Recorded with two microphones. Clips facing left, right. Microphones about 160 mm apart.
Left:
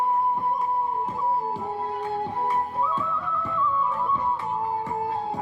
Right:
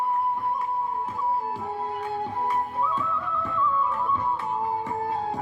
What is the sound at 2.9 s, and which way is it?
Music, centre (ahead or behind).